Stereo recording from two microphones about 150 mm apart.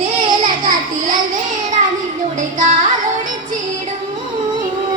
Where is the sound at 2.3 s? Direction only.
60° right (ahead or behind).